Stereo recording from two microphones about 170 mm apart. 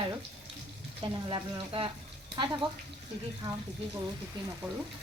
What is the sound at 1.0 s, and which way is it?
Speech, 30° right (ahead or behind).